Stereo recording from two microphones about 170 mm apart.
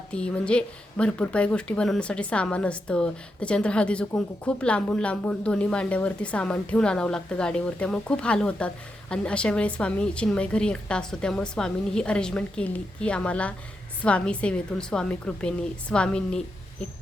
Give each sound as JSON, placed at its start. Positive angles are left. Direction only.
{"t": 0.1, "sound": "a woman's voice", "side_deg": 5}